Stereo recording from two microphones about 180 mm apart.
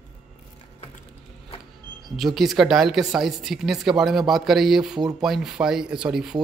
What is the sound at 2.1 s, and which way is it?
Speech, centre (ahead or behind).